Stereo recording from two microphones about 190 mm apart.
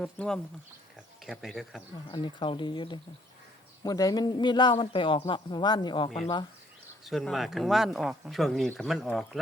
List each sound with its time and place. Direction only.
0.0 s speech: 5° left (ahead or behind)
2.0 s a man's voice: 25° left (ahead or behind)
7.0 s speech: centre (ahead or behind)